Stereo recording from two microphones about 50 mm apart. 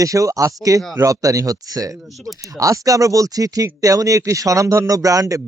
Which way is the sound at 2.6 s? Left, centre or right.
Right.